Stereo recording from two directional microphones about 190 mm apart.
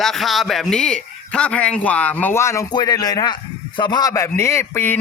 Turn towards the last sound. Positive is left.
turn(degrees=10)  # may be behind; listen again after turning